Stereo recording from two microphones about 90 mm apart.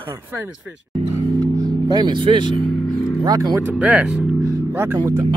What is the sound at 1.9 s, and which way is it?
Speech, 55° right (ahead or behind).